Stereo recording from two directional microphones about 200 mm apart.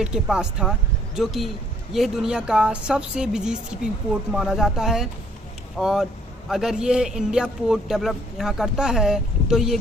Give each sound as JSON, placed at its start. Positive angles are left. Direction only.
{"t": 0.0, "sound": "a man's voice", "side_deg": -5}